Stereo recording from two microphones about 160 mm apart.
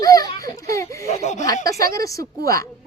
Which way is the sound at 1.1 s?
45° left (ahead or behind).